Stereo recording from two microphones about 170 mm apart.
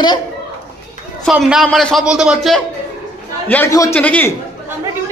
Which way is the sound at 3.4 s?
15° left (ahead or behind).